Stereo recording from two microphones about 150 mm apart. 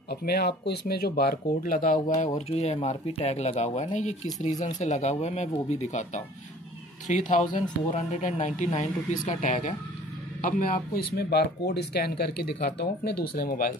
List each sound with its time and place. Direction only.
0.1 s speech: 90° left; by 9.8 s 55° left (ahead or behind)
10.4 s speech: 70° left (ahead or behind)